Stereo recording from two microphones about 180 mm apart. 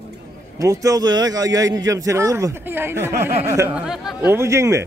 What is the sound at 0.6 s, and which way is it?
A man's voice, 20° right (ahead or behind).